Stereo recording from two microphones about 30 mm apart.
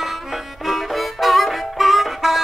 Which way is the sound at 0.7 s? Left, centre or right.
Centre.